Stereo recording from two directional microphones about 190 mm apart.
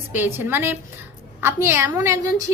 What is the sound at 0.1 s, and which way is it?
A woman's voice, 10° right (ahead or behind).